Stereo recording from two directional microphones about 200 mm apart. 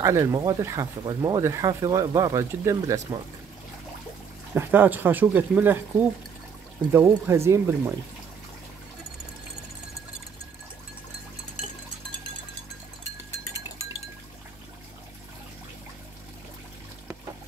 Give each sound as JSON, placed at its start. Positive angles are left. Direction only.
{"t": 0.0, "sound": "speech", "side_deg": -15}
{"t": 4.6, "sound": "speech", "side_deg": -10}